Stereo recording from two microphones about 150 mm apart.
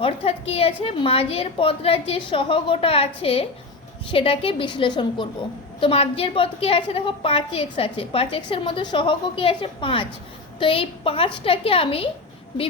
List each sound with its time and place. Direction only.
0.0 s a woman's voice: 40° left (ahead or behind)